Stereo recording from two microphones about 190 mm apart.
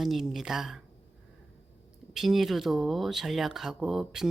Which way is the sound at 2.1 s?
Centre (ahead or behind).